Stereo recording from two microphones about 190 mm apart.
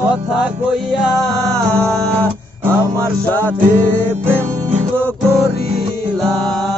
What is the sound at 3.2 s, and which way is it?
Music, 10° left (ahead or behind).